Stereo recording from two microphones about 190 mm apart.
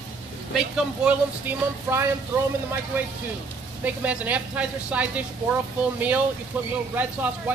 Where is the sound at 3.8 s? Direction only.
10° right (ahead or behind).